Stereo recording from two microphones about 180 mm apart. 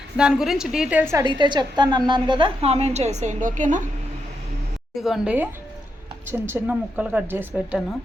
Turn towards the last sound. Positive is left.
turn(degrees=-10)  # may be behind; listen again after turning